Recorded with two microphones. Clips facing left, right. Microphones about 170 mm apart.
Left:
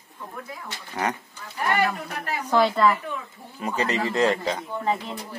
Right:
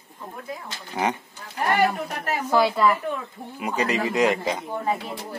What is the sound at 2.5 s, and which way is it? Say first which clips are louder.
A woman's voice: even; 5° right (ahead or behind).